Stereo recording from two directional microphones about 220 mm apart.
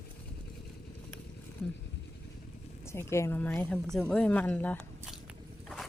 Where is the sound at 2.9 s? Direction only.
10° left (ahead or behind).